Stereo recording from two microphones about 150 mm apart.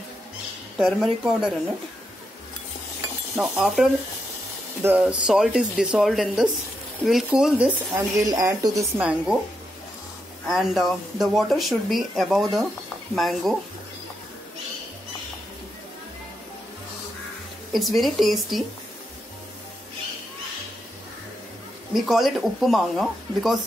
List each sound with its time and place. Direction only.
0.7 s speech: centre (ahead or behind)
3.3 s speech: centre (ahead or behind)
8.2 s speech: 20° right (ahead or behind)
9.0 s speech: 5° right (ahead or behind)
10.4 s speech: centre (ahead or behind)
17.7 s speech: centre (ahead or behind)
21.9 s speech: centre (ahead or behind)